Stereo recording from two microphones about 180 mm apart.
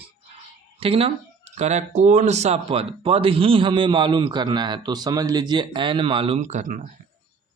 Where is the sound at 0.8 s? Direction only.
30° right (ahead or behind).